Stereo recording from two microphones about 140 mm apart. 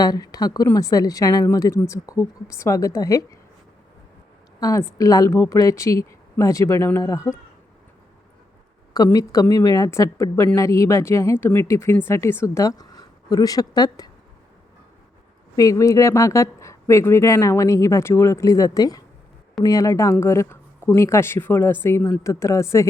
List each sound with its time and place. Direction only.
0.0 s a woman's voice: 25° left (ahead or behind)
4.6 s a woman's voice: 20° left (ahead or behind)
9.1 s a woman's voice: 25° left (ahead or behind)
15.5 s a woman's voice: 25° left (ahead or behind)